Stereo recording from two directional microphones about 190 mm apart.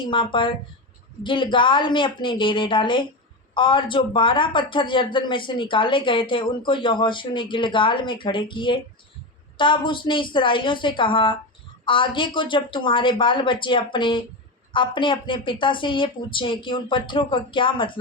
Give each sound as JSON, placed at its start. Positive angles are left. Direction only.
{"t": 0.0, "sound": "a woman's voice", "side_deg": 25}